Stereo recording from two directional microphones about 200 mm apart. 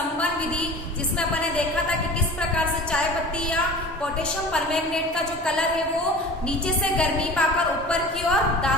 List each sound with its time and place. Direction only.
4.5 s a woman's voice: 5° left (ahead or behind)
6.9 s a woman's voice: 5° left (ahead or behind)